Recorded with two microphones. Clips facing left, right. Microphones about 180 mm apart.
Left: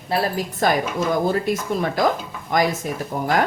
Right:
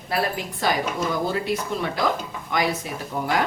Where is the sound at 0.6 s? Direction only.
50° left (ahead or behind).